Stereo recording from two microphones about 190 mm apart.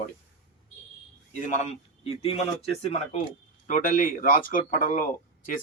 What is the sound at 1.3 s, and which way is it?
A man's voice, 40° left (ahead or behind).